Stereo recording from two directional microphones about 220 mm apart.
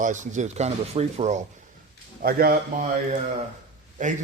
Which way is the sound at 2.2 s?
45° right (ahead or behind).